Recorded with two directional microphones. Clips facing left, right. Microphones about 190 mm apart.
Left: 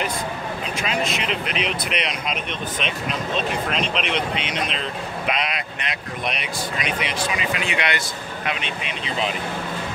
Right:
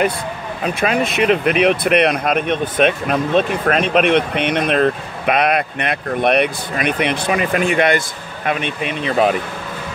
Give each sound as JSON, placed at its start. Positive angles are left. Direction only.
{"t": 0.7, "sound": "speech", "side_deg": -55}